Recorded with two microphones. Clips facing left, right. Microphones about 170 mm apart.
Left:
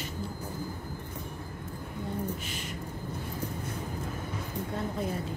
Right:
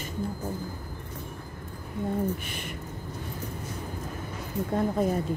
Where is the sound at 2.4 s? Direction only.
55° right (ahead or behind).